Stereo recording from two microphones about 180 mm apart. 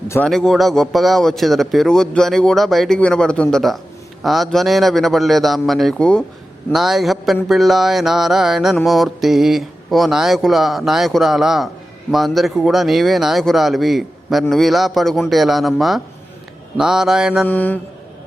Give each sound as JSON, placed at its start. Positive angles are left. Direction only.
{"t": 0.3, "sound": "mantra", "side_deg": 0}
{"t": 17.5, "sound": "mantra", "side_deg": 10}